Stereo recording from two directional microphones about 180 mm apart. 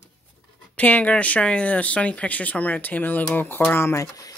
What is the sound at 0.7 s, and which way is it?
Speech, 5° left (ahead or behind).